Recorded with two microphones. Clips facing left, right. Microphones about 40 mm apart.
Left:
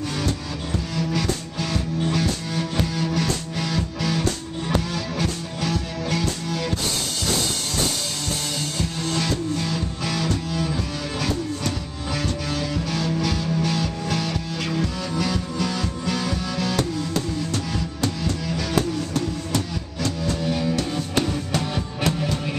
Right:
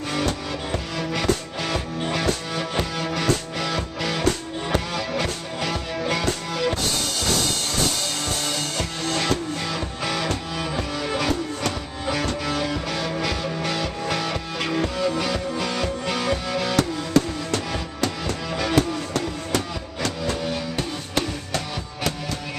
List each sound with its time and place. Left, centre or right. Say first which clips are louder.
0.1 s music: right 2 dB; right
2.5 s music: even; right
12.3 s music: right 2 dB; right
16.7 s music: right 4 dB; right
18.2 s music: even; right
18.8 s music: even; right
21.1 s music: left 2 dB; centre